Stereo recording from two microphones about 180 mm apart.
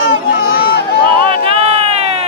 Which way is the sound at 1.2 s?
30° right (ahead or behind).